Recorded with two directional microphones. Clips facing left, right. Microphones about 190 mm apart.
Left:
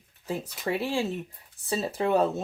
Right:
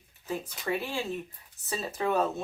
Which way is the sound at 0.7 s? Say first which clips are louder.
Left 4 dB; 35° left (ahead or behind).